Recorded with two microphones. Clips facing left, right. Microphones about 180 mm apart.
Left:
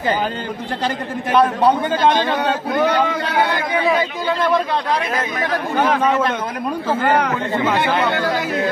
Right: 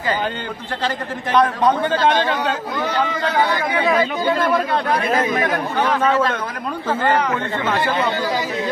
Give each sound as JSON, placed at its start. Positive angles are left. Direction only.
{"t": 1.3, "sound": "a man's voice", "side_deg": 10}
{"t": 2.7, "sound": "speech", "side_deg": 60}
{"t": 7.8, "sound": "speech", "side_deg": 60}